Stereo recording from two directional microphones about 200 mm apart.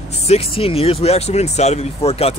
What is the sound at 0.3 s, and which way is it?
Speech, 30° left (ahead or behind).